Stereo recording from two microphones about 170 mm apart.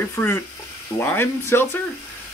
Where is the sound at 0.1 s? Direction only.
10° left (ahead or behind).